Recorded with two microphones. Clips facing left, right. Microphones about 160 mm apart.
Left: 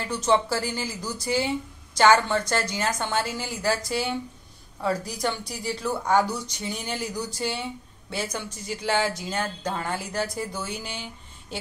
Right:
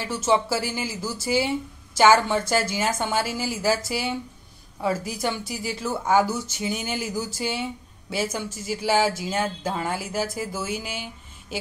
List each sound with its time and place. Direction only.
0.0 s speech: 5° right (ahead or behind)